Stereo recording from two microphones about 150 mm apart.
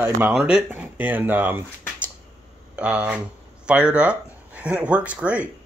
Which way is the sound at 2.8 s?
10° right (ahead or behind).